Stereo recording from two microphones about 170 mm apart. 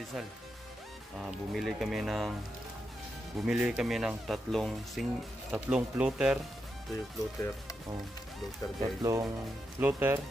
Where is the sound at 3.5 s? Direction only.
5° right (ahead or behind).